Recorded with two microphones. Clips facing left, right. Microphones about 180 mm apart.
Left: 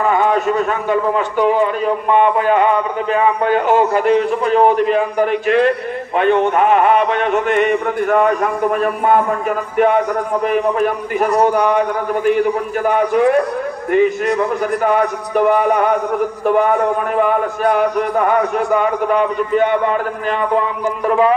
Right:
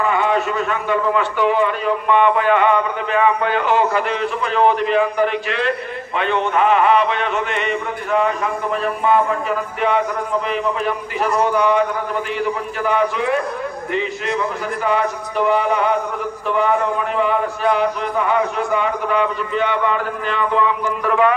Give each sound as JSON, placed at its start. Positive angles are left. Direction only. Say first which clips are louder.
{"t": 0.1, "sound": "a man's voice", "louder": "left 4 dB", "side_deg": 45}